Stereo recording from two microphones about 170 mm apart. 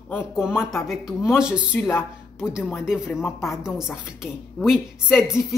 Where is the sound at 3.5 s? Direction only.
5° right (ahead or behind).